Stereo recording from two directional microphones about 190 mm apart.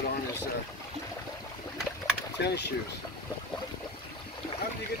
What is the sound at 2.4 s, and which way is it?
Speech, 60° left (ahead or behind).